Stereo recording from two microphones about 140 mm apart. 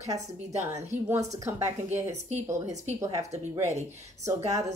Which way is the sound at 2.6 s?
55° right (ahead or behind).